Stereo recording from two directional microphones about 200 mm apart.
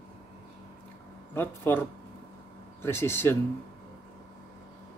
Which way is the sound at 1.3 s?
10° left (ahead or behind).